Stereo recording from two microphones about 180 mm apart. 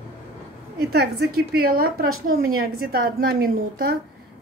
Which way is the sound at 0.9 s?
65° right (ahead or behind).